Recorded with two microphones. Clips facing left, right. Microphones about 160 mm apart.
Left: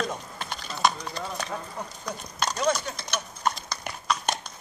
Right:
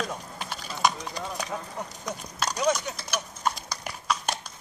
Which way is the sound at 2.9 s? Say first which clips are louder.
Even; 5° right (ahead or behind).